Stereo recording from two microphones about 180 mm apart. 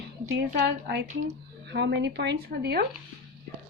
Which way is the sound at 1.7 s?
75° right (ahead or behind).